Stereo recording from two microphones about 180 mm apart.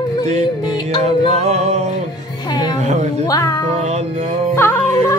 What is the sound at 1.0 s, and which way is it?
Music, 35° right (ahead or behind).